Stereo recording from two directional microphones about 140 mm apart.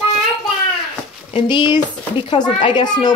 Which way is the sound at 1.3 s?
35° left (ahead or behind).